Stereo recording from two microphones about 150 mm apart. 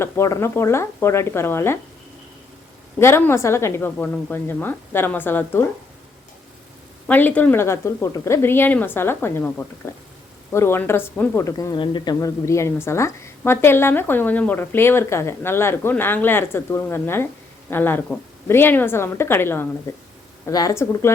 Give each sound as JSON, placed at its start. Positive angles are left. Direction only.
{"t": 0.0, "sound": "speech", "side_deg": 20}
{"t": 3.0, "sound": "speech", "side_deg": 15}
{"t": 7.1, "sound": "speech", "side_deg": 10}